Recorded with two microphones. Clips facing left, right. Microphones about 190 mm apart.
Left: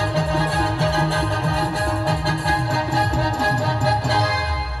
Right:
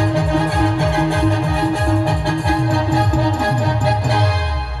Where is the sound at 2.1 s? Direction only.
55° right (ahead or behind).